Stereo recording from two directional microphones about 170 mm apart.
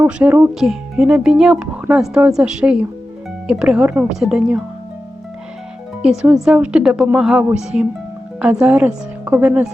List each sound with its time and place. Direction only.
0.0 s speech: 10° right (ahead or behind)
6.0 s speech: 5° right (ahead or behind)